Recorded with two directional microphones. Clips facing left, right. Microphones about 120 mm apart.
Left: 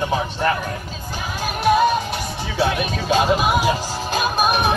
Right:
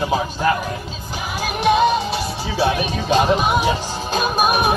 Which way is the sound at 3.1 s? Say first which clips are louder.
Right 1 dB; 5° left (ahead or behind).